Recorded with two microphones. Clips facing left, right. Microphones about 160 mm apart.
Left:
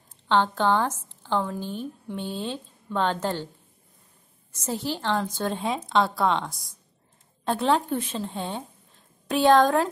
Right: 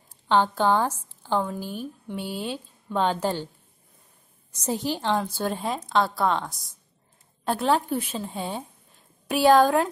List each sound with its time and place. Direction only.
0.3 s a woman's voice: 10° right (ahead or behind)
4.5 s a woman's voice: 15° right (ahead or behind)